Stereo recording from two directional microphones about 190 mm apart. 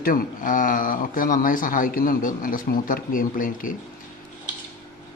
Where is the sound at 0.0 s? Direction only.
50° left (ahead or behind).